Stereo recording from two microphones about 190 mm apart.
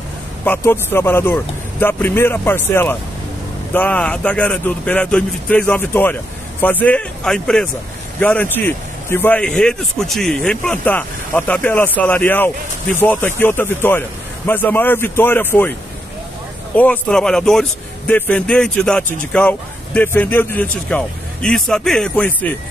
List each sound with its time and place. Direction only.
0.5 s a man's voice: 10° left (ahead or behind)
16.7 s a man's voice: 10° left (ahead or behind)